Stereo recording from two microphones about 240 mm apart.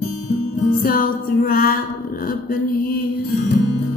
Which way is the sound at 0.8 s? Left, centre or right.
Left.